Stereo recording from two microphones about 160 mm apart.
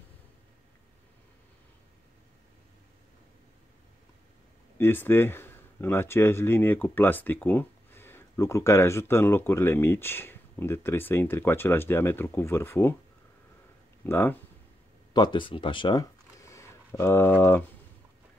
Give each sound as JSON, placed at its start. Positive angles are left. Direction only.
{"t": 4.7, "sound": "speech", "side_deg": 15}
{"t": 14.0, "sound": "speech", "side_deg": 15}
{"t": 15.1, "sound": "speech", "side_deg": 30}